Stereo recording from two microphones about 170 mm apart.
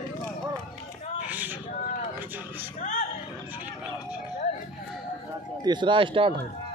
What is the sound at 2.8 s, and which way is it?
Music, 50° left (ahead or behind).